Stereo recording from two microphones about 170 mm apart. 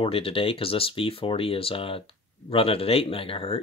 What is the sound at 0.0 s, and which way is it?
Speech, 35° left (ahead or behind).